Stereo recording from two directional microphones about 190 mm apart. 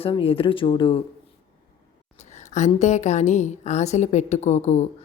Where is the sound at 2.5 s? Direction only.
35° left (ahead or behind).